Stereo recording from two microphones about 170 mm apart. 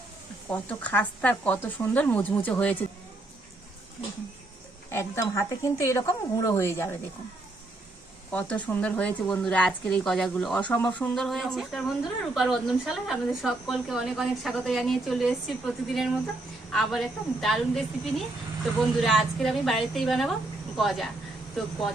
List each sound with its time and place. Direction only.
0.5 s a woman's voice: 10° left (ahead or behind)
4.9 s a woman's voice: 15° left (ahead or behind)
8.3 s a woman's voice: 10° left (ahead or behind)